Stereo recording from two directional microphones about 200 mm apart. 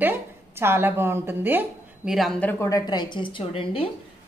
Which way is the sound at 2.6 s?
20° left (ahead or behind).